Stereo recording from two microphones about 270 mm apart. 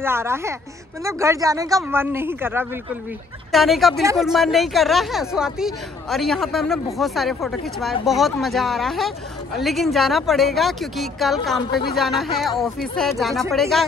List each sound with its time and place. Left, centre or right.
0.0 s a woman's voice: centre
11.7 s speech: left
12.0 s a woman's voice: centre